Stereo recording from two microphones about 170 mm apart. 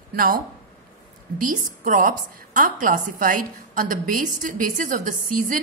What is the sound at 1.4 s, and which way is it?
A woman's voice, 50° right (ahead or behind).